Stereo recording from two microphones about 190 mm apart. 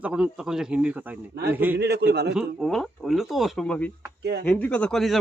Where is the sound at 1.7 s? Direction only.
60° right (ahead or behind).